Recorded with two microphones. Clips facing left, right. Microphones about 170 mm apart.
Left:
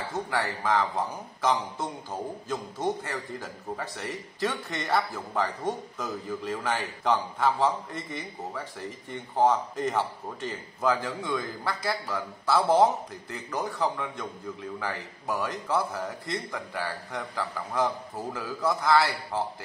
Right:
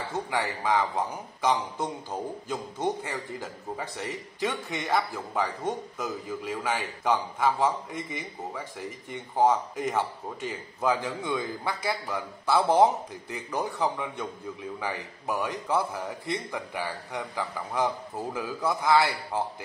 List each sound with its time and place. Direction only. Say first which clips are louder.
0.3 s a man's voice: even; 15° right (ahead or behind)